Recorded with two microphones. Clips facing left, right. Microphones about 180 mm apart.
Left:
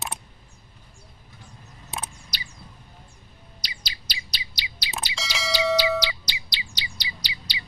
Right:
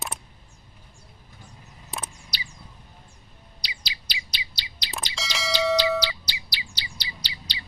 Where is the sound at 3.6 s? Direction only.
45° left (ahead or behind).